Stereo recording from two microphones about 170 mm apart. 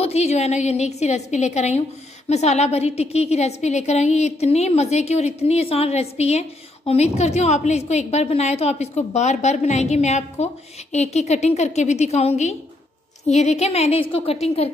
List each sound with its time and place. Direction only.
0.0 s a woman's voice: 40° left (ahead or behind)